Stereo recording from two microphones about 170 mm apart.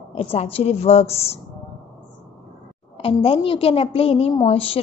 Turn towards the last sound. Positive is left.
turn(degrees=35)  # may be behind; listen again after turning